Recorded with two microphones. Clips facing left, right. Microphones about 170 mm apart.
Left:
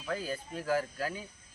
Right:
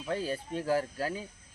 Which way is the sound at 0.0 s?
30° right (ahead or behind).